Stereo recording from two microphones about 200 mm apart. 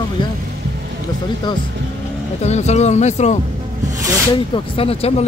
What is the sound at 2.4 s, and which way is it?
Speech, 35° left (ahead or behind).